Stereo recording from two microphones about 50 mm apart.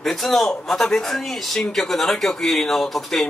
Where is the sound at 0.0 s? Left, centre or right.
Centre.